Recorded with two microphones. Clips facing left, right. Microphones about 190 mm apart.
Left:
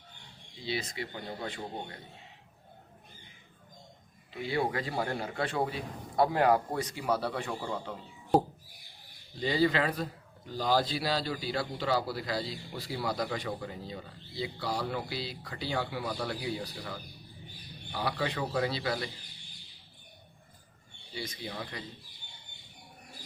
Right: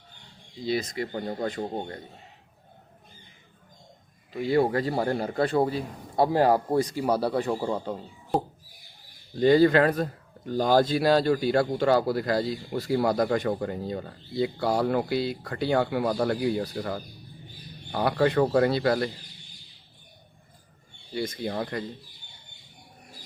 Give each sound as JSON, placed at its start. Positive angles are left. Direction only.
{"t": 0.6, "sound": "a man's voice", "side_deg": -45}
{"t": 4.3, "sound": "a man's voice", "side_deg": -45}
{"t": 8.3, "sound": "a sound", "side_deg": 0}
{"t": 9.4, "sound": "a man's voice", "side_deg": -50}
{"t": 21.1, "sound": "a man's voice", "side_deg": -50}